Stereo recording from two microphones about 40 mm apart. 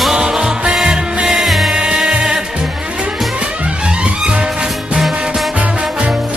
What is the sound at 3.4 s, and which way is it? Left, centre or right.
Music, right.